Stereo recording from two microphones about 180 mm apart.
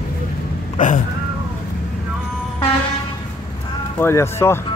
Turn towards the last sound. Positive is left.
turn(degrees=15)  # may be behind; listen again after turning